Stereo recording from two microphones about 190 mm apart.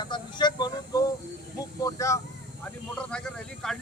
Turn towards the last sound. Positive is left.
turn(degrees=5)  # may be behind; listen again after turning